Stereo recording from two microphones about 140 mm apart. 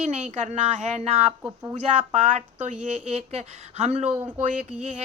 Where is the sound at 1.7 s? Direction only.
55° right (ahead or behind).